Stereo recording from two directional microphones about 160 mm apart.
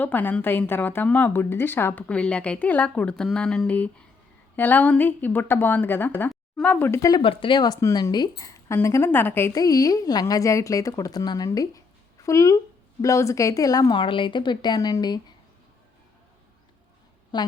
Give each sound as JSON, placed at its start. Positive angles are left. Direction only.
{"t": 0.0, "sound": "a woman's voice", "side_deg": 10}
{"t": 7.2, "sound": "a woman's voice", "side_deg": 35}
{"t": 17.3, "sound": "a woman's voice", "side_deg": 25}